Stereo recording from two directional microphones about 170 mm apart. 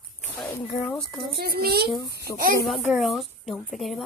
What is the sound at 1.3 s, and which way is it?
Speech, 65° right (ahead or behind).